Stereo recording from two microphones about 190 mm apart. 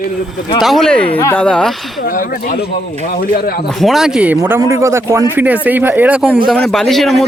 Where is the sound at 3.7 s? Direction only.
Centre (ahead or behind).